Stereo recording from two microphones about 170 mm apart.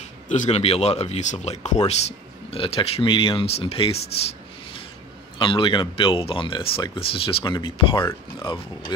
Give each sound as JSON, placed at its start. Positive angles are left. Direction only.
{"t": 0.3, "sound": "speech", "side_deg": 40}